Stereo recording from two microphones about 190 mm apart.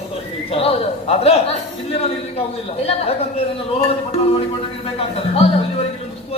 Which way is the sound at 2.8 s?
30° left (ahead or behind).